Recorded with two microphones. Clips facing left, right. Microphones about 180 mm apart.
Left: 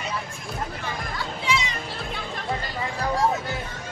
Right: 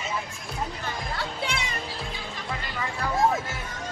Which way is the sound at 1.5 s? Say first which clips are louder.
Left 6 dB; 55° right (ahead or behind).